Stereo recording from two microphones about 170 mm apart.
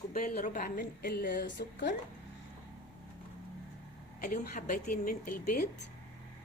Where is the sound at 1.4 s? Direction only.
90° left.